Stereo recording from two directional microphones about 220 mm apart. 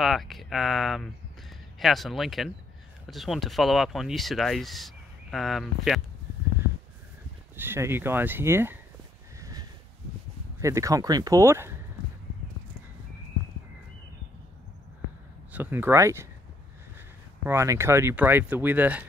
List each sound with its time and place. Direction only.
0.0 s speech: centre (ahead or behind)
7.5 s speech: 10° right (ahead or behind)
9.4 s a sound: 15° right (ahead or behind)
10.6 s speech: 15° right (ahead or behind)
15.5 s speech: 10° right (ahead or behind)
17.5 s speech: 10° right (ahead or behind)